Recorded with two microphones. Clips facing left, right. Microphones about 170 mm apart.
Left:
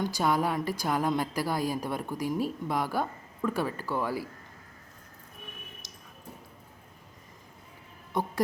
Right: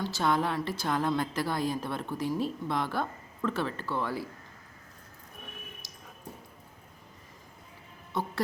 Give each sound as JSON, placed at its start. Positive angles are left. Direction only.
{"t": 0.0, "sound": "a woman's voice", "side_deg": 10}
{"t": 8.1, "sound": "a woman's voice", "side_deg": 15}